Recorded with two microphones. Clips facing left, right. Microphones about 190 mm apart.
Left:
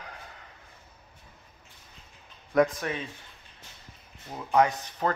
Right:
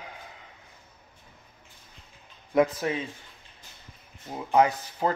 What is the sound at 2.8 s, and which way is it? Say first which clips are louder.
Speech: right 4 dB; 25° right (ahead or behind).